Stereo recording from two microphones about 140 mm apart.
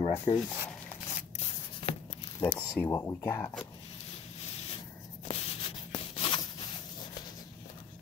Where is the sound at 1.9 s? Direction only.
45° left (ahead or behind).